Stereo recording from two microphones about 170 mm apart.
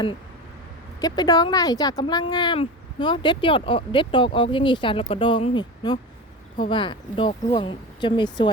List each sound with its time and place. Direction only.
1.0 s speech: 25° left (ahead or behind)